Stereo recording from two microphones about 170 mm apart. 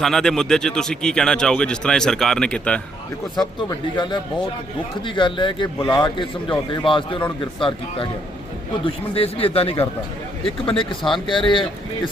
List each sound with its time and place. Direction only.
0.0 s speech: 5° left (ahead or behind)
3.7 s a man's voice: 25° left (ahead or behind)